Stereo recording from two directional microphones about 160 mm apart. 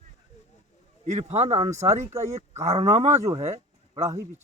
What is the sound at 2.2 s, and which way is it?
Speech, 45° right (ahead or behind).